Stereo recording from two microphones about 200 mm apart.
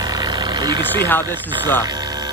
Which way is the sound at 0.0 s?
20° right (ahead or behind).